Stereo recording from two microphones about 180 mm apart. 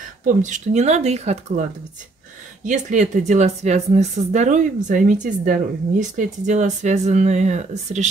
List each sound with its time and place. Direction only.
0.2 s a woman's voice: 45° right (ahead or behind)
2.6 s a woman's voice: 45° right (ahead or behind)